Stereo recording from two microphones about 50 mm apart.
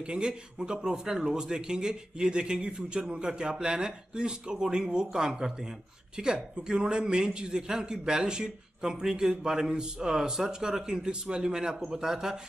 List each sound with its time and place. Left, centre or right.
0.0 s speech: centre